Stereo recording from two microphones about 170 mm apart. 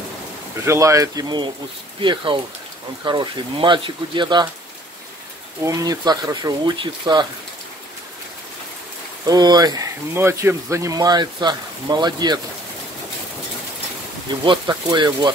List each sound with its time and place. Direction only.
0.7 s speech: 20° right (ahead or behind)
5.7 s speech: 20° right (ahead or behind)
9.2 s speech: 25° right (ahead or behind)
14.4 s speech: 25° right (ahead or behind)